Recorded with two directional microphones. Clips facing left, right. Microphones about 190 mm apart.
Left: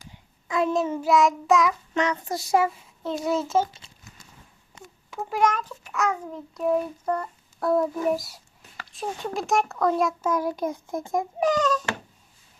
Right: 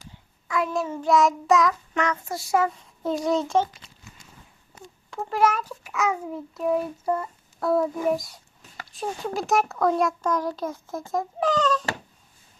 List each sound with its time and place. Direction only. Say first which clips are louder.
0.0 s a sound: right 1 dB; 20° left (ahead or behind)
1.0 s a child's voice: right 1 dB; centre (ahead or behind)
2.4 s a child's voice: left 1 dB; 20° left (ahead or behind)
3.2 s a child's voice: even; 5° left (ahead or behind)
4.8 s a sound: right 1 dB; 10° right (ahead or behind)
5.1 s a child's voice: right 1 dB; centre (ahead or behind)